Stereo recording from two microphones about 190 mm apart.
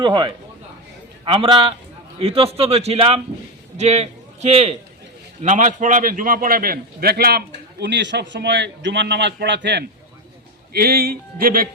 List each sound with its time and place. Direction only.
0.0 s a man's voice: 25° right (ahead or behind); by 11.7 s 50° right (ahead or behind)